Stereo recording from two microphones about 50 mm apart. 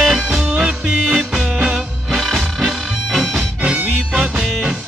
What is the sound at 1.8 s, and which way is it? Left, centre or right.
Music, centre.